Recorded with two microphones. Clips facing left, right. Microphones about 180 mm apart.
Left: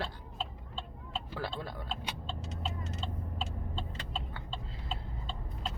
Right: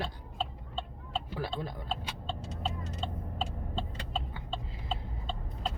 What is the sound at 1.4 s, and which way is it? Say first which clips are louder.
Tick-tock: right 1 dB; 15° right (ahead or behind).